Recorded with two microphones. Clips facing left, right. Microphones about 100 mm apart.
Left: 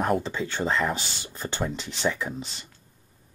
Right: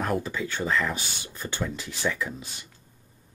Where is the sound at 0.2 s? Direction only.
30° left (ahead or behind).